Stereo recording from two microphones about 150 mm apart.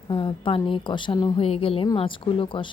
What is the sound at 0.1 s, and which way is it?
A woman's voice, 30° left (ahead or behind).